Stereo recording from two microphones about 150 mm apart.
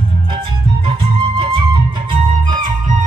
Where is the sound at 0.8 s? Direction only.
40° right (ahead or behind).